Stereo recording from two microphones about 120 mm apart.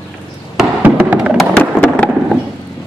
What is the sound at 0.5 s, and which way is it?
Music, 10° right (ahead or behind).